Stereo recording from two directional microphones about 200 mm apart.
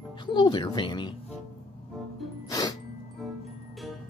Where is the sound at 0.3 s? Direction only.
25° left (ahead or behind).